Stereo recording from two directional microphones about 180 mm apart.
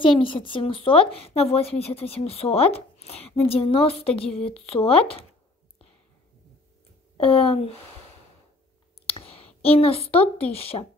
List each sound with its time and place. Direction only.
0.0 s a woman's voice: 30° left (ahead or behind)
7.2 s a woman's voice: 30° left (ahead or behind)
9.0 s clicking: 30° left (ahead or behind)
9.6 s a woman's voice: 35° left (ahead or behind)